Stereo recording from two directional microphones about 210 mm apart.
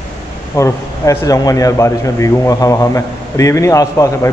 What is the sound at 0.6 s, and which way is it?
A man's voice, 15° left (ahead or behind).